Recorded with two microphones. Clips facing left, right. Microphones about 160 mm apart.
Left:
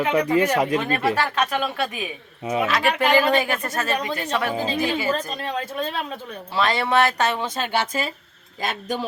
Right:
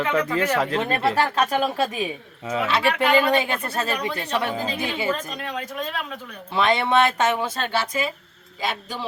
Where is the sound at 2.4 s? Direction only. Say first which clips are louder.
Left 3 dB; 20° left (ahead or behind).